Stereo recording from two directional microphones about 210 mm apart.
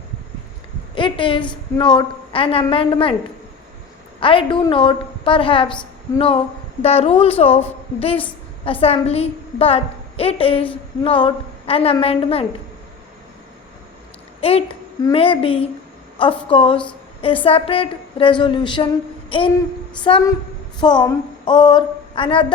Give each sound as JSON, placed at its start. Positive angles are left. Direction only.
{"t": 0.9, "sound": "a woman's voice", "side_deg": 25}
{"t": 4.2, "sound": "a woman's voice", "side_deg": 25}
{"t": 14.4, "sound": "a woman's voice", "side_deg": 30}